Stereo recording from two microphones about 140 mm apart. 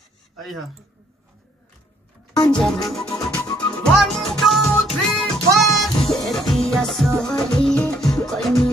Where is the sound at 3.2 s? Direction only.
30° left (ahead or behind).